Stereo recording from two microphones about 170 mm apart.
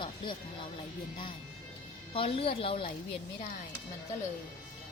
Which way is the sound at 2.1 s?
35° left (ahead or behind).